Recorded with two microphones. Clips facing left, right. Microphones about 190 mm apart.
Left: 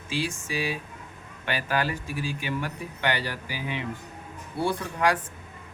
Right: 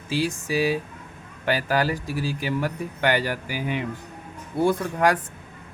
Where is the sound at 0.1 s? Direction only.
40° right (ahead or behind).